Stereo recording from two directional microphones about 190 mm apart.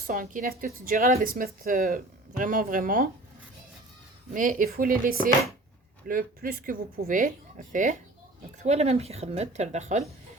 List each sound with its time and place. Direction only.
0.1 s speech: 45° right (ahead or behind)
4.4 s a woman's voice: 45° right (ahead or behind)